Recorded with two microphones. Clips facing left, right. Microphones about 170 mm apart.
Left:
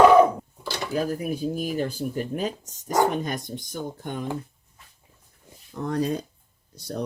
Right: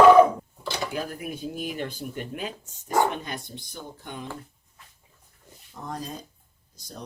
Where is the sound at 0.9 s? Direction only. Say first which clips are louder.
Left 6 dB; 35° left (ahead or behind).